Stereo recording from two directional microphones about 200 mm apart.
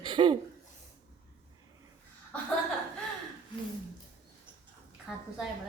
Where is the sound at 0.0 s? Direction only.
25° right (ahead or behind).